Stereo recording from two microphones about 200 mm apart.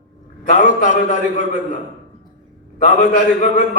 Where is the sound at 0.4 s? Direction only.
40° left (ahead or behind).